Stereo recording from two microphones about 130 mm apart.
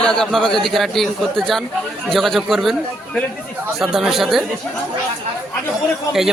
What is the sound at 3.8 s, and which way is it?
Speech, centre (ahead or behind).